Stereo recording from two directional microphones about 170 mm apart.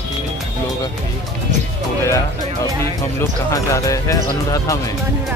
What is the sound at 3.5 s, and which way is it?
Speech, 20° left (ahead or behind).